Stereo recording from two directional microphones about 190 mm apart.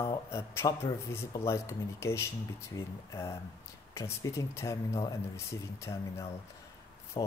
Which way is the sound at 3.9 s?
15° left (ahead or behind).